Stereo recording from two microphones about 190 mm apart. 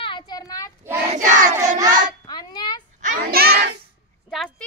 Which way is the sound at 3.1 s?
55° right (ahead or behind).